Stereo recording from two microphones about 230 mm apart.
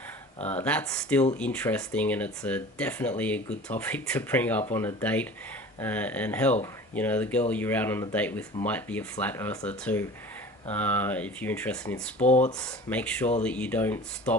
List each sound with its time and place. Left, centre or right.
0.4 s speech: centre
12.2 s speech: left
12.6 s speech: centre